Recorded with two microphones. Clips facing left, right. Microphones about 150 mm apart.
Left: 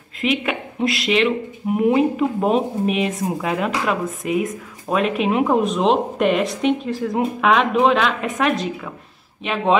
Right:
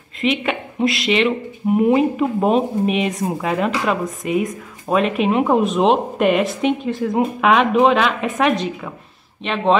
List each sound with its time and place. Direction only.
0.2 s speech: centre (ahead or behind)